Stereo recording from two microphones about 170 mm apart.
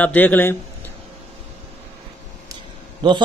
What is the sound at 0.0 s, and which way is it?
Speech, 10° left (ahead or behind).